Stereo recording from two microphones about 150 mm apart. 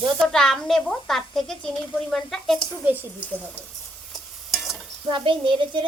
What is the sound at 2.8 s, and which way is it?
Speech, 10° right (ahead or behind).